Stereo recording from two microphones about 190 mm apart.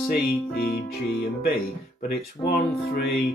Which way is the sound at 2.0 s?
50° left (ahead or behind).